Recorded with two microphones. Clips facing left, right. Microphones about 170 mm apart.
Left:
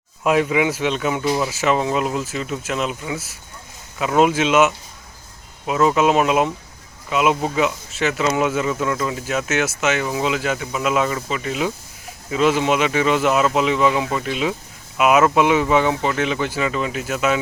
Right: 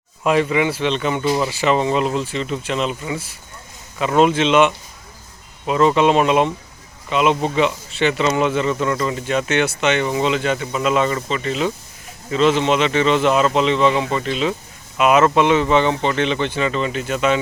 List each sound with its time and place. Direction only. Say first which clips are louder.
0.2 s speech: right 1 dB; 5° left (ahead or behind)